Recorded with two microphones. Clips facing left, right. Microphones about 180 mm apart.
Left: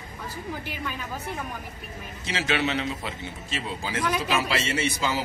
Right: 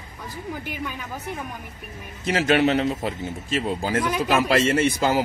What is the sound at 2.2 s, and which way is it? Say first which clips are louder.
A man's voice: right 8 dB; 50° right (ahead or behind).